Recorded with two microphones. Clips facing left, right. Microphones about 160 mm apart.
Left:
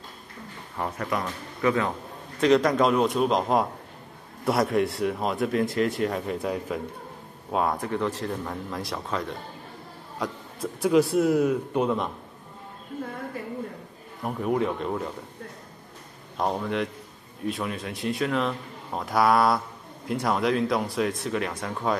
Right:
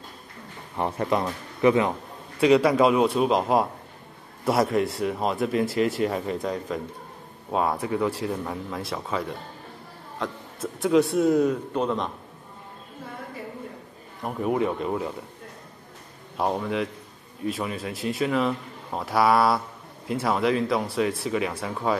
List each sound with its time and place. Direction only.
0.7 s a man's voice: 25° right (ahead or behind)
2.4 s speech: 5° right (ahead or behind); by 12.1 s 10° left (ahead or behind)
14.2 s speech: 5° right (ahead or behind)
16.3 s speech: 5° right (ahead or behind)